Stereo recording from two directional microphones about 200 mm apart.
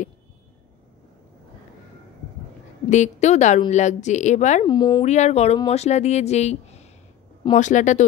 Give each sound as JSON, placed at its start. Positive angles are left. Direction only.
{"t": 2.9, "sound": "speech", "side_deg": 35}
{"t": 4.6, "sound": "speech", "side_deg": 20}
{"t": 5.0, "sound": "speech", "side_deg": 35}